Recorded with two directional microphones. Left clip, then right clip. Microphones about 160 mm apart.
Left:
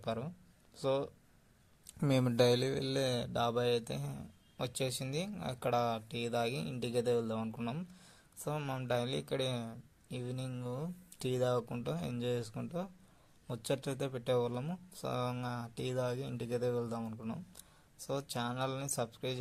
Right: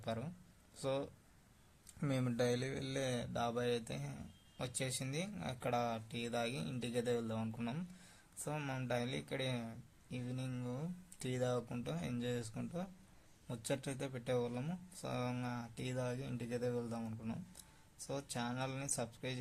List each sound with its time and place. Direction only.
0.0 s speech: 20° left (ahead or behind)